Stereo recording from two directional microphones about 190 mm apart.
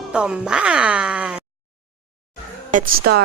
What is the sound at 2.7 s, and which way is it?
Speech, 60° right (ahead or behind).